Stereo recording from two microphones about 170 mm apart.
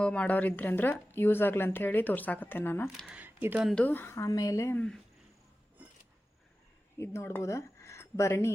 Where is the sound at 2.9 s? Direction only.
5° right (ahead or behind).